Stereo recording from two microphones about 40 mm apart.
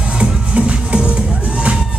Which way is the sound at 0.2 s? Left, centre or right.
Right.